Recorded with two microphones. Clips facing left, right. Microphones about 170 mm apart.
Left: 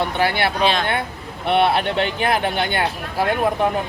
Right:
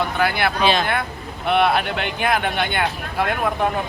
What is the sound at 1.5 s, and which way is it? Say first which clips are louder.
Speech: left 1 dB; 30° left (ahead or behind).